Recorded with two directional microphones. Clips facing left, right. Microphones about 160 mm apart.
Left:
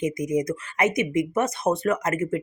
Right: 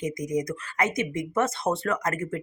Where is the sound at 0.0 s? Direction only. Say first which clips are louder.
Left 4 dB; 20° left (ahead or behind).